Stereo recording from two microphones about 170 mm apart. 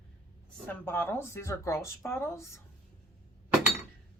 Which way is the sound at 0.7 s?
15° left (ahead or behind).